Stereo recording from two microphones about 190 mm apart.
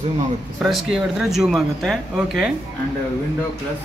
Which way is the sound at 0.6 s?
Centre (ahead or behind).